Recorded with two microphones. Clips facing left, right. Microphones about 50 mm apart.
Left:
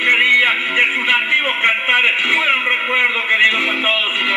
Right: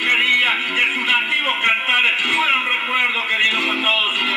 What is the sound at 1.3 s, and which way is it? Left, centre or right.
A man's voice, centre.